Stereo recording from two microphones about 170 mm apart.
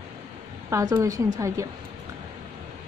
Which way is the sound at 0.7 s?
20° right (ahead or behind).